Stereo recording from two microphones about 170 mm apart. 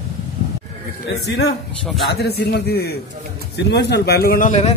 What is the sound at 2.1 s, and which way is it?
Speech, 80° left.